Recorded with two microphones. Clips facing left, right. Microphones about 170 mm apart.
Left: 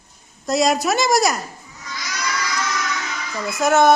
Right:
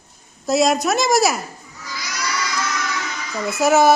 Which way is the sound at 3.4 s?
5° right (ahead or behind).